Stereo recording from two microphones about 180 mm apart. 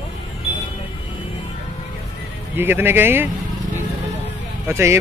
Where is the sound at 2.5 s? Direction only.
10° right (ahead or behind).